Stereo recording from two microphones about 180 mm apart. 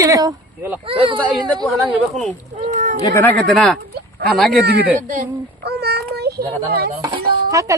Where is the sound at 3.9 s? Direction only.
65° right (ahead or behind).